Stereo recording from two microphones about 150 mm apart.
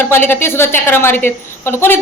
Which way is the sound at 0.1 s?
15° left (ahead or behind).